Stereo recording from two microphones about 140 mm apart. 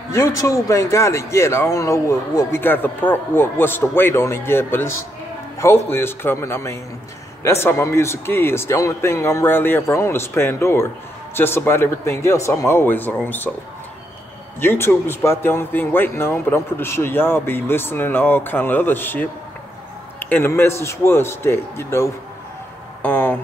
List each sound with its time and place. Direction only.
0.1 s a man's voice: 20° left (ahead or behind)
14.6 s speech: 15° left (ahead or behind)
23.0 s a sound: 15° left (ahead or behind)